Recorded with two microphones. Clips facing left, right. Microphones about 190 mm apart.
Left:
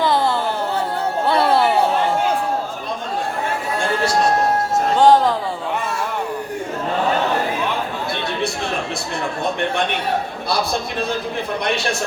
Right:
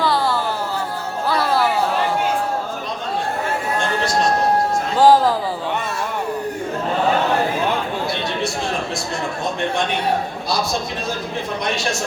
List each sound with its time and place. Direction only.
0.0 s music: 20° left (ahead or behind)
1.3 s a sound: 25° left (ahead or behind)
4.9 s music: 5° right (ahead or behind)